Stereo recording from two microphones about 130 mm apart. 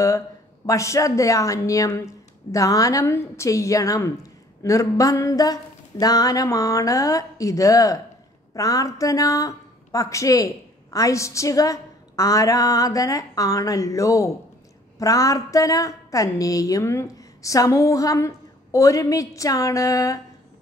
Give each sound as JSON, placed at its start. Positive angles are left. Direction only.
{"t": 0.7, "sound": "a woman's voice", "side_deg": 25}